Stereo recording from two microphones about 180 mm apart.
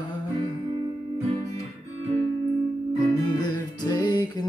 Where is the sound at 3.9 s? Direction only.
25° left (ahead or behind).